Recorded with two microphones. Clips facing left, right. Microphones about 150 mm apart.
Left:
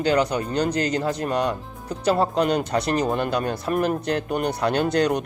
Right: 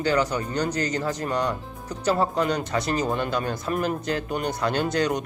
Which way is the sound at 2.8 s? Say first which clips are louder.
Left 3 dB; 65° left (ahead or behind).